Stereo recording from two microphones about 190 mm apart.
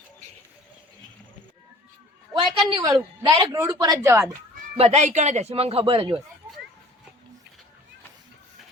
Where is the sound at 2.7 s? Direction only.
25° right (ahead or behind).